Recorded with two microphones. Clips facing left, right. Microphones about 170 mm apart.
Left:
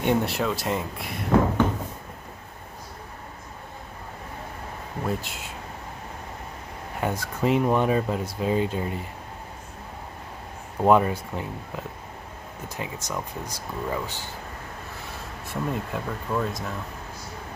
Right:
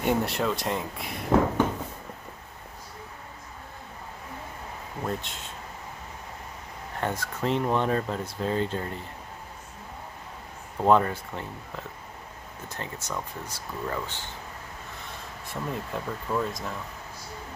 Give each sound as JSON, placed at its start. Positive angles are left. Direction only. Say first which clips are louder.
{"t": 0.0, "sound": "speech", "louder": "left 2 dB", "side_deg": 0}
{"t": 5.0, "sound": "speech", "louder": "left 3 dB", "side_deg": 5}
{"t": 7.0, "sound": "speech", "louder": "left 3 dB", "side_deg": 10}
{"t": 10.8, "sound": "speech", "louder": "left 2 dB", "side_deg": 15}
{"t": 15.4, "sound": "speech", "louder": "left 4 dB", "side_deg": 0}